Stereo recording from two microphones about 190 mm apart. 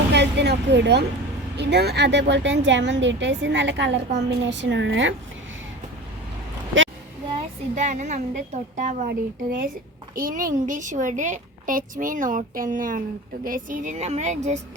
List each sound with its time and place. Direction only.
0.1 s a sound: 65° right (ahead or behind)
1.5 s speech: 60° right (ahead or behind)
7.8 s a woman's voice: 40° right (ahead or behind)